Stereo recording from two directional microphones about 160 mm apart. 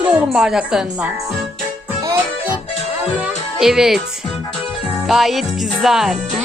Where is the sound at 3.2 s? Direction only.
5° right (ahead or behind).